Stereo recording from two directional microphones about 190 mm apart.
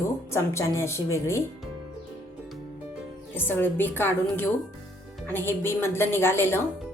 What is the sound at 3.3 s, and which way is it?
A woman's voice, 10° left (ahead or behind).